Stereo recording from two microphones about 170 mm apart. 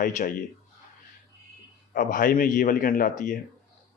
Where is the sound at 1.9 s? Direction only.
55° left (ahead or behind).